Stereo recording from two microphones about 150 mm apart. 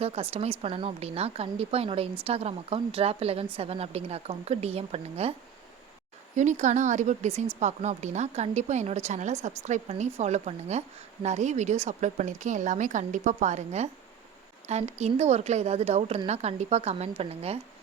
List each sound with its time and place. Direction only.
0.0 s a woman's voice: 40° right (ahead or behind)
6.3 s a woman's voice: 55° right (ahead or behind)